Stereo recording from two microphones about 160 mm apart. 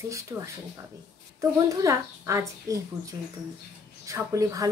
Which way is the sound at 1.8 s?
20° right (ahead or behind).